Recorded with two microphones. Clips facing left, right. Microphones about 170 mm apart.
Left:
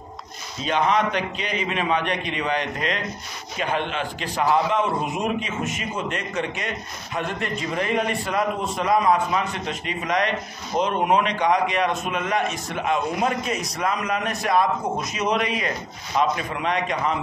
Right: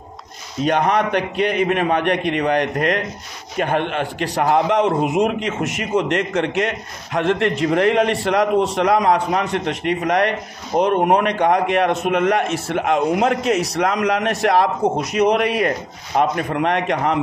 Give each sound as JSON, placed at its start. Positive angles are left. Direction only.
{"t": 0.6, "sound": "a man's voice", "side_deg": -60}
{"t": 5.0, "sound": "a man's voice", "side_deg": -70}